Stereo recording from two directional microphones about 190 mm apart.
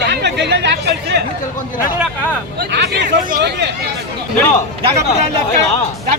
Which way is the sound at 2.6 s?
60° right (ahead or behind).